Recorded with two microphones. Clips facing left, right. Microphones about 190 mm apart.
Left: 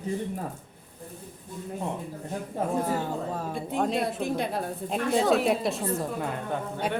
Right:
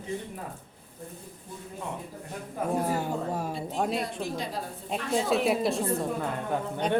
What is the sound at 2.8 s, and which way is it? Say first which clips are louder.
Speech: even; 10° right (ahead or behind).